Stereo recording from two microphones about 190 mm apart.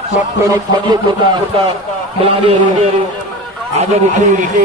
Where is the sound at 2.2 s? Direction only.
30° right (ahead or behind).